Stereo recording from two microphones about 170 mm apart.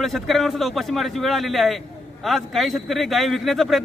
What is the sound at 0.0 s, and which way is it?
A man's voice, centre (ahead or behind).